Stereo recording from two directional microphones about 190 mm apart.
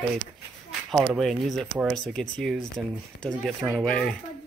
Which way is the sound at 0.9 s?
5° right (ahead or behind).